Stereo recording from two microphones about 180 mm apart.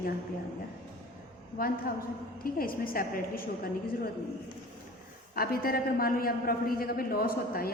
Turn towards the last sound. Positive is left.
turn(degrees=55)  # may be behind; listen again after turning